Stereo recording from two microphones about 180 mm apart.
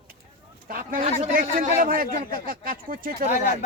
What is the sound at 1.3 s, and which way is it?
Speech, 50° right (ahead or behind).